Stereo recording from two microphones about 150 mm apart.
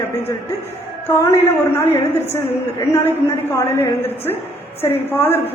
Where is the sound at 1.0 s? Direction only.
15° left (ahead or behind).